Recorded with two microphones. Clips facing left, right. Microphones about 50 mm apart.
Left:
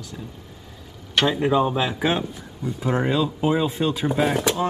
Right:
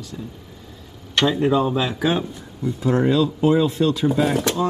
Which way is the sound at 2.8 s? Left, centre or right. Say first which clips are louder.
Right 4 dB; centre.